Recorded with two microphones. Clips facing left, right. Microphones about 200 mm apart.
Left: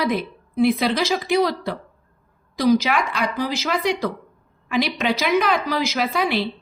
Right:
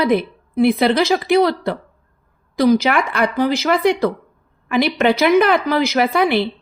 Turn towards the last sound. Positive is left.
turn(degrees=-60)  # may be behind; listen again after turning